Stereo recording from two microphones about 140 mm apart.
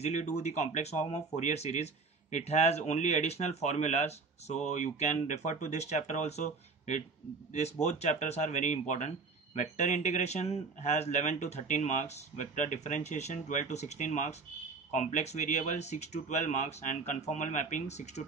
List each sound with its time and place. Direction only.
0.0 s a man's voice: 55° left (ahead or behind)